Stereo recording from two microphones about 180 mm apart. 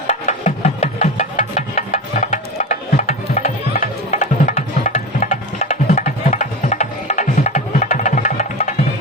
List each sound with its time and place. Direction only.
0.1 s music: 40° left (ahead or behind)